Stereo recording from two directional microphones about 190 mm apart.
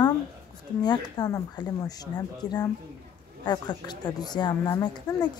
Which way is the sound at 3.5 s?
20° left (ahead or behind).